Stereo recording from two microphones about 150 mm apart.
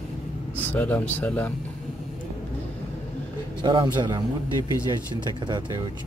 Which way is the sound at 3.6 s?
30° right (ahead or behind).